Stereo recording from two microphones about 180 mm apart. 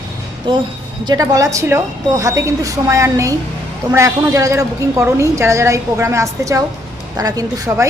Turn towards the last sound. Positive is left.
turn(degrees=-20)  # may be behind; listen again after turning